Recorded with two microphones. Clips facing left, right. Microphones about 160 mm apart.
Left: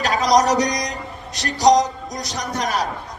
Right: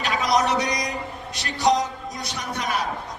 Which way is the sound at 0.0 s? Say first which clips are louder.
Left 5 dB; 40° left (ahead or behind).